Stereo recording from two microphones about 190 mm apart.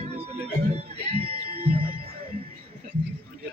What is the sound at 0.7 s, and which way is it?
Speech, 35° right (ahead or behind).